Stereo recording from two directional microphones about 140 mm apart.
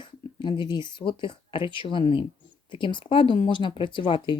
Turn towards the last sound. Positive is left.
turn(degrees=35)  # may be behind; listen again after turning